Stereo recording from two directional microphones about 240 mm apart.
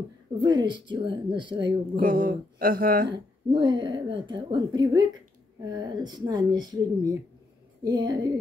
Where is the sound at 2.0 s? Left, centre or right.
Right.